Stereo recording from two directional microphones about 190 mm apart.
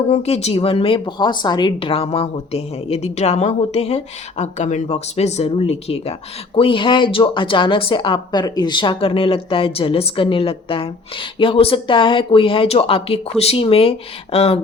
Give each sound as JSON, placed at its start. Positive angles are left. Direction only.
{"t": 0.1, "sound": "a woman's voice", "side_deg": 35}